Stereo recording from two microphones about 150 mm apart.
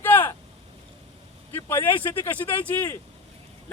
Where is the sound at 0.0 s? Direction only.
15° left (ahead or behind).